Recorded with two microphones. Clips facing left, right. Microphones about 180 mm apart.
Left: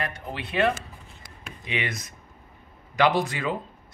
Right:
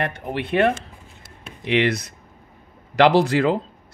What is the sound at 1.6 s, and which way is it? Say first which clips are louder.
Speech: right 11 dB; 75° right (ahead or behind).